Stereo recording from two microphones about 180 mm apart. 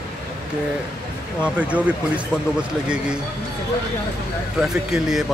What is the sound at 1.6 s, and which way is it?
Speech, 10° right (ahead or behind).